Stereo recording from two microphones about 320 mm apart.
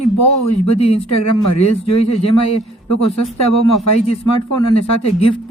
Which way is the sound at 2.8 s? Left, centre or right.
Left.